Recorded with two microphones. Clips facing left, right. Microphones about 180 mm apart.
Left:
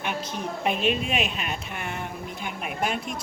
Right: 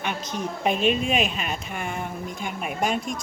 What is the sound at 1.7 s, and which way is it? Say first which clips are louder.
Speech: right 3 dB; 45° right (ahead or behind).